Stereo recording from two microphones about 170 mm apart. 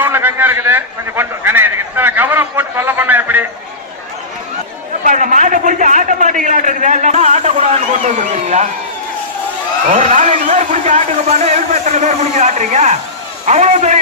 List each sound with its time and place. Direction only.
0.0 s a sound: 10° right (ahead or behind)
5.0 s a man's voice: 50° right (ahead or behind)
9.9 s a man's voice: 50° right (ahead or behind)